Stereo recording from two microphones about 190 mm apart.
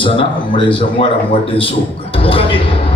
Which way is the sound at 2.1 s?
30° left (ahead or behind).